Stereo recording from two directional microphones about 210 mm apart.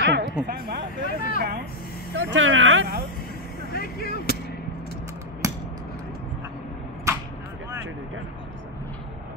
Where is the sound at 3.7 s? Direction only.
45° left (ahead or behind).